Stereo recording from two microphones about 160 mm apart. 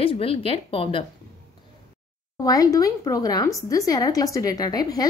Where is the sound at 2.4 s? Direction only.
20° left (ahead or behind).